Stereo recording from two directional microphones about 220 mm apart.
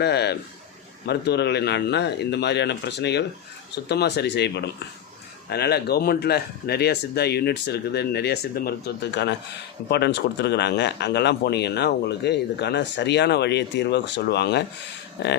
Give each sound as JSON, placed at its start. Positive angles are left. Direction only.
{"t": 0.0, "sound": "speech", "side_deg": 50}